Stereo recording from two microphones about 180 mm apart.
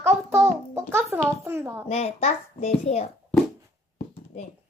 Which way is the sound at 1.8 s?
35° left (ahead or behind).